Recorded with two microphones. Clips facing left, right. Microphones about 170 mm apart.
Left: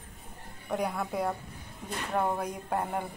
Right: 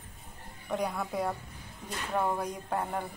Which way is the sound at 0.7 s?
5° left (ahead or behind).